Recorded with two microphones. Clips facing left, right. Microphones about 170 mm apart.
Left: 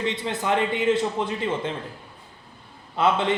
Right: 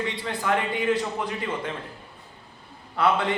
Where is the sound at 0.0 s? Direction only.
20° left (ahead or behind).